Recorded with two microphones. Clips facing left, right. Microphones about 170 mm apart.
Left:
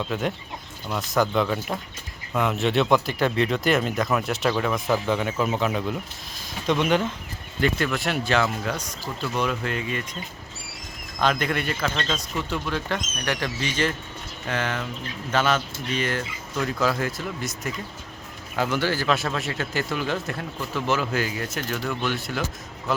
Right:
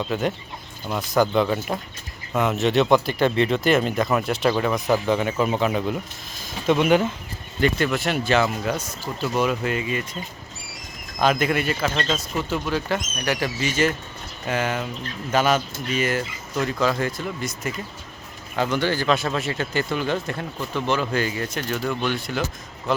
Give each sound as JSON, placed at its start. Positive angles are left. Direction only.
{"t": 0.0, "sound": "speech", "side_deg": 0}
{"t": 11.2, "sound": "a man's voice", "side_deg": -10}